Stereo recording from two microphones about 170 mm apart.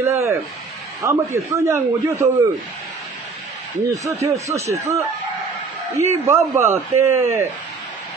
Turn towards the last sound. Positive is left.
turn(degrees=-15)  # may be behind; listen again after turning